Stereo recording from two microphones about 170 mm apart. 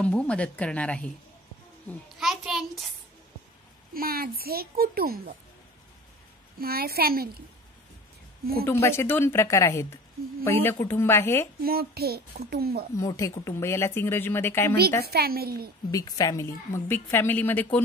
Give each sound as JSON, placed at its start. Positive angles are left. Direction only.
{"t": 0.0, "sound": "a woman's voice", "side_deg": 5}
{"t": 2.1, "sound": "a sound", "side_deg": 0}
{"t": 3.9, "sound": "a child's voice", "side_deg": -60}
{"t": 6.6, "sound": "a child's voice", "side_deg": -60}
{"t": 8.6, "sound": "a woman's voice", "side_deg": 15}
{"t": 11.6, "sound": "a child's voice", "side_deg": -65}
{"t": 12.9, "sound": "a woman's voice", "side_deg": 20}
{"t": 15.0, "sound": "a woman's voice", "side_deg": -65}
{"t": 15.9, "sound": "a woman's voice", "side_deg": 20}